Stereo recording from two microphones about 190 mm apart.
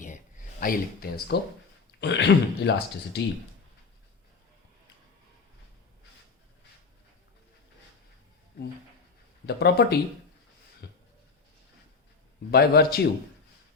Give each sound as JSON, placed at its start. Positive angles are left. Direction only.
{"t": 0.6, "sound": "speech", "side_deg": 50}
{"t": 2.0, "sound": "speech", "side_deg": 65}
{"t": 9.5, "sound": "speech", "side_deg": 60}
{"t": 10.8, "sound": "a sound", "side_deg": 60}
{"t": 12.5, "sound": "speech", "side_deg": 55}